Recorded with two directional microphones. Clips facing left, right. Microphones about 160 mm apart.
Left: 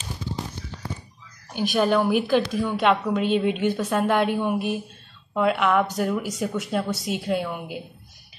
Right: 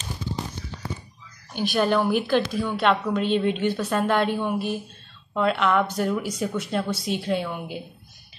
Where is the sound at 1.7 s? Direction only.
5° left (ahead or behind).